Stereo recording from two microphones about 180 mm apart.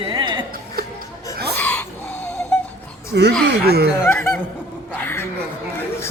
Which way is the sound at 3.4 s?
65° right (ahead or behind).